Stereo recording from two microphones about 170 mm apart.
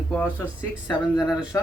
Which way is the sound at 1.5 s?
10° left (ahead or behind).